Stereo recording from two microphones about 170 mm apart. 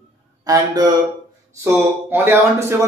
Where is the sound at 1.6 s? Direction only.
15° right (ahead or behind).